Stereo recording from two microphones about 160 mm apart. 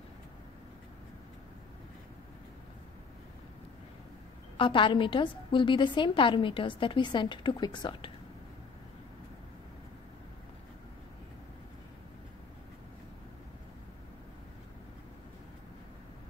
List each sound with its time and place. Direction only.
4.6 s a woman's voice: 30° left (ahead or behind)